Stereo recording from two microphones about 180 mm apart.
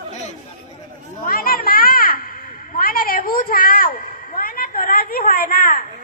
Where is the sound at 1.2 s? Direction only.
50° left (ahead or behind).